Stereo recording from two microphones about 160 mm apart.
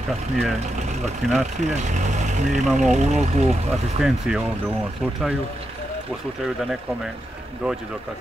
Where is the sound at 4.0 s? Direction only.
Centre (ahead or behind).